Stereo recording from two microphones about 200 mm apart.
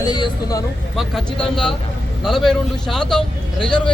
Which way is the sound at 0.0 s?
20° left (ahead or behind).